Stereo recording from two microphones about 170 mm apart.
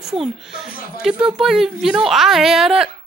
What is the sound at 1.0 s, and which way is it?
A woman's voice, 5° right (ahead or behind).